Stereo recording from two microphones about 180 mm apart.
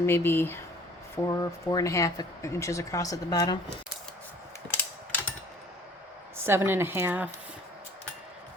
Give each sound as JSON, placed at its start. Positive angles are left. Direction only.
{"t": 0.0, "sound": "speech", "side_deg": 15}
{"t": 4.7, "sound": "mechanisms", "side_deg": 10}
{"t": 6.3, "sound": "speech", "side_deg": -15}